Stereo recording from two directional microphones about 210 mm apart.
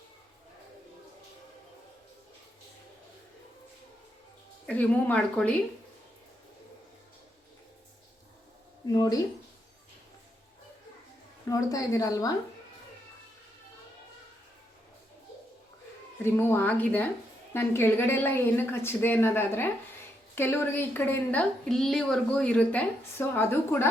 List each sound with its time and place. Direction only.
4.6 s speech: 5° left (ahead or behind)
8.9 s speech: 20° left (ahead or behind)
11.4 s a woman's voice: 15° left (ahead or behind)
16.2 s a woman's voice: 10° left (ahead or behind)